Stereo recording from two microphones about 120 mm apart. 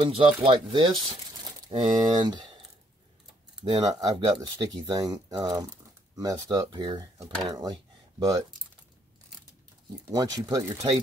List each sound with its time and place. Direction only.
0.1 s speech: 45° right (ahead or behind)
3.7 s speech: 30° right (ahead or behind)
10.1 s speech: 30° right (ahead or behind)